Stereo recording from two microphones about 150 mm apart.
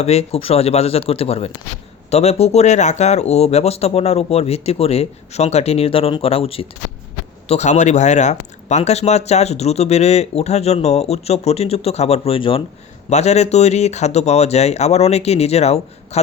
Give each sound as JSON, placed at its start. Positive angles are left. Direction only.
{"t": 0.0, "sound": "speech", "side_deg": 45}
{"t": 13.1, "sound": "speech", "side_deg": 45}